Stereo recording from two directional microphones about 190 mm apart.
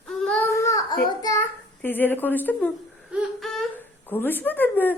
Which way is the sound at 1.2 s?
15° left (ahead or behind).